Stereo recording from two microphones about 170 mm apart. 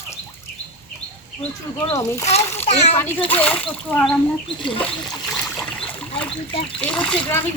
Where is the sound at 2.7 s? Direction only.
40° left (ahead or behind).